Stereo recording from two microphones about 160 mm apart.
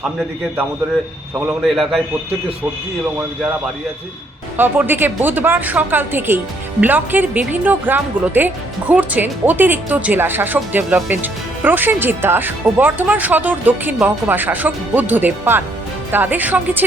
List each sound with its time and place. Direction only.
1.6 s a man's voice: centre (ahead or behind)
4.5 s a woman's voice: 10° right (ahead or behind)